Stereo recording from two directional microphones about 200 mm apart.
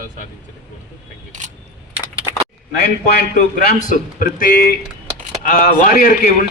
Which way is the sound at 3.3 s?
45° left (ahead or behind).